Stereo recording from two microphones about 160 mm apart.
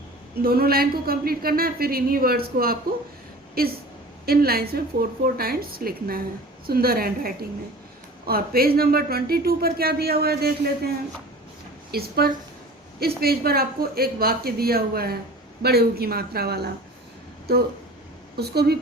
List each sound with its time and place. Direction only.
0.4 s a man's voice: 70° right (ahead or behind)
11.9 s a man's voice: 75° right (ahead or behind)